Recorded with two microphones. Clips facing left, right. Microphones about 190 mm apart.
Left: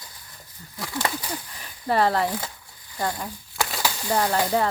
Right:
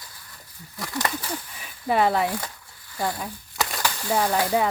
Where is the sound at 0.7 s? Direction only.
5° left (ahead or behind).